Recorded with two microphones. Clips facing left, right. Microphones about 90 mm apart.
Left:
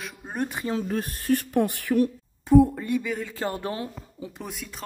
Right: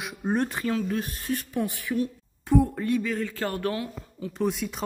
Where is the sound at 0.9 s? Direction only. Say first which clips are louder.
Left 5 dB; 50° left (ahead or behind).